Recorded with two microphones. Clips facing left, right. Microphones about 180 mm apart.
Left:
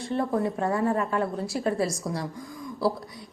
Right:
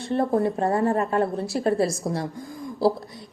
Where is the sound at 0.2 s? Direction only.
30° right (ahead or behind).